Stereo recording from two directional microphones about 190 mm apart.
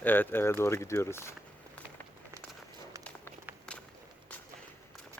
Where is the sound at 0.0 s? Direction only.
10° left (ahead or behind).